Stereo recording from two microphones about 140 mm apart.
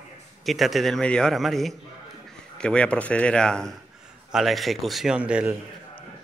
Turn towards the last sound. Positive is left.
turn(degrees=-10)  # may be behind; listen again after turning